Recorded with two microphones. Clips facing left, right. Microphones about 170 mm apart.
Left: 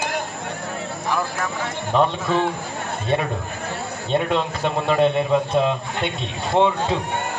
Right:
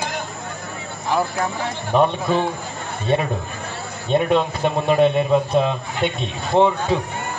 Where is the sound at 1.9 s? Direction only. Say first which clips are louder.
Right 2 dB; 15° right (ahead or behind).